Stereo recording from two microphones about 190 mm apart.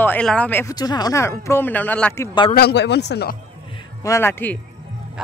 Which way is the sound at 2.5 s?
60° left (ahead or behind).